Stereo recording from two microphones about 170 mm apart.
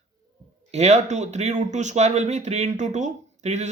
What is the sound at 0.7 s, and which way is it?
Speech, 40° right (ahead or behind).